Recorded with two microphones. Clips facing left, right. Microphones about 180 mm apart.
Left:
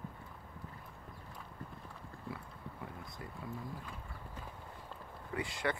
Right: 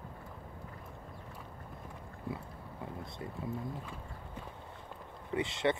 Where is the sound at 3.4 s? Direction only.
25° right (ahead or behind).